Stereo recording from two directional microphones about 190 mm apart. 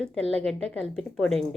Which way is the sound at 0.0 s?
5° left (ahead or behind).